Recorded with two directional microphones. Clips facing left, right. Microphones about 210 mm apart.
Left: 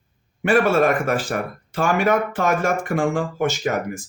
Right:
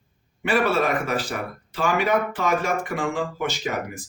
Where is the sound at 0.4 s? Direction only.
50° left (ahead or behind).